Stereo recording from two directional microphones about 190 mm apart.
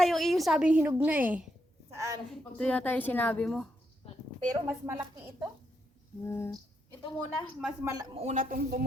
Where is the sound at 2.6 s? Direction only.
5° left (ahead or behind).